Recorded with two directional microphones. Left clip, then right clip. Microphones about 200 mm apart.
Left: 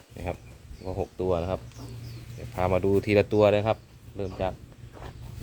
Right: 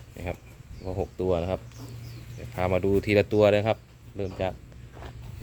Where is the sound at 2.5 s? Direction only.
5° right (ahead or behind).